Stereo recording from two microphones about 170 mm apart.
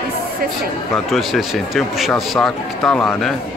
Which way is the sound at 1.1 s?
Centre (ahead or behind).